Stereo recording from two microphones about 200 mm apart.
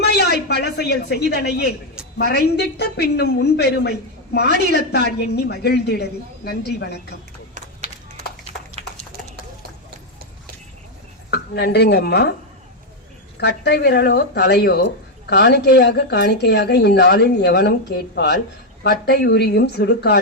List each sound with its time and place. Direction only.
0.0 s a woman's voice: 55° left (ahead or behind)
7.5 s run: 35° right (ahead or behind)
8.8 s a sound: 30° right (ahead or behind)
11.3 s speech: 55° left (ahead or behind)
13.4 s speech: 55° left (ahead or behind)